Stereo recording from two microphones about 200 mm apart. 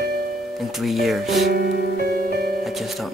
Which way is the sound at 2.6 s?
Centre (ahead or behind).